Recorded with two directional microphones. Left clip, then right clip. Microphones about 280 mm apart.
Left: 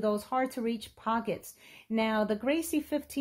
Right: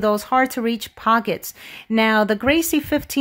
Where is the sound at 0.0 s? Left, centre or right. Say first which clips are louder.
Right 12 dB; right.